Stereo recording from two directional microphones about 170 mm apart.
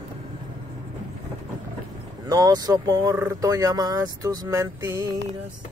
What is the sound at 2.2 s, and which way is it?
Speech, 20° right (ahead or behind).